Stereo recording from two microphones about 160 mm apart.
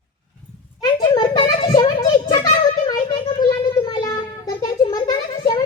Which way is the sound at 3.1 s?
25° left (ahead or behind).